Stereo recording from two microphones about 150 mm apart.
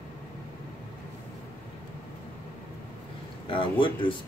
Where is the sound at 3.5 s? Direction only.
35° left (ahead or behind).